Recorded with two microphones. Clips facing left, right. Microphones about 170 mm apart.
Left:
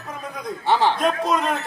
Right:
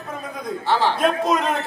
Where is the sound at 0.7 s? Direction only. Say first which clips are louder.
Left 1 dB; 20° left (ahead or behind).